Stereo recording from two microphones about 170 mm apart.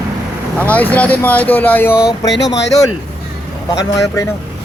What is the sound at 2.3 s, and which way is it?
Speech, 90° left.